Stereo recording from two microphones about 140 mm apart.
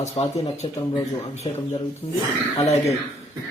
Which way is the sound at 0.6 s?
40° left (ahead or behind).